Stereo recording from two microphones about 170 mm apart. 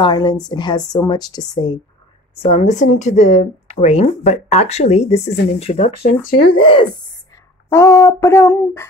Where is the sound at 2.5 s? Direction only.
45° left (ahead or behind).